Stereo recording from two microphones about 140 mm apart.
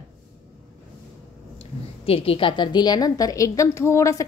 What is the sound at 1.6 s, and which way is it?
A woman's voice, 40° left (ahead or behind).